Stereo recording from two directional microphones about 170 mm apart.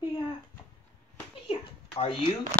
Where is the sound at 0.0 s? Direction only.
25° left (ahead or behind).